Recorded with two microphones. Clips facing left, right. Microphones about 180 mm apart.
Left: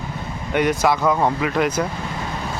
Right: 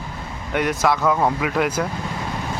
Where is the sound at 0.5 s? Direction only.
Centre (ahead or behind).